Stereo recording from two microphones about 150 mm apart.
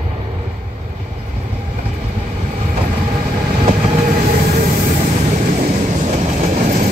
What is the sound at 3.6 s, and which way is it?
Train, 50° right (ahead or behind).